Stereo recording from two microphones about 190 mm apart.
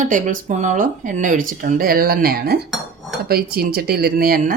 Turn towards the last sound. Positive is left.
turn(degrees=-50)  # may be behind; listen again after turning